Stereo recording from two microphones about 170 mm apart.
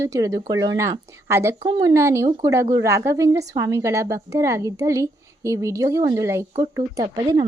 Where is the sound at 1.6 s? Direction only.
25° right (ahead or behind).